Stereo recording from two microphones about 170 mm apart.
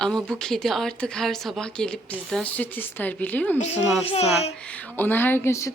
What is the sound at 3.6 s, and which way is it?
Speech, 40° left (ahead or behind).